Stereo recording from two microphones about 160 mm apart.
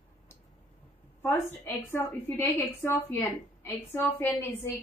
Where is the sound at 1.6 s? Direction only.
15° left (ahead or behind).